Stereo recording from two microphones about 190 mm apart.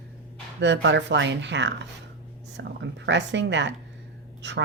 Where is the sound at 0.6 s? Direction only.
70° right (ahead or behind).